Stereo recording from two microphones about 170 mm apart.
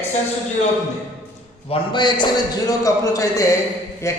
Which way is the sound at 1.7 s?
30° left (ahead or behind).